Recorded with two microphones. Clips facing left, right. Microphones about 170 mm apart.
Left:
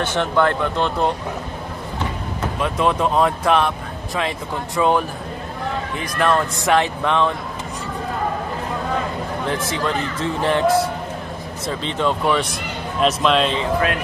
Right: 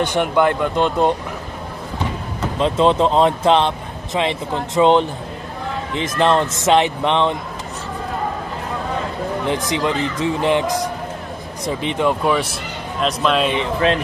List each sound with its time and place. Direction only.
0.0 s speech: 15° right (ahead or behind)
2.6 s speech: 25° right (ahead or behind)
9.5 s speech: 15° right (ahead or behind); by 13.5 s centre (ahead or behind)